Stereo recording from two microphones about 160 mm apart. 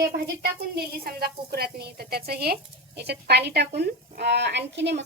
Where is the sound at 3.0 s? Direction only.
90° right.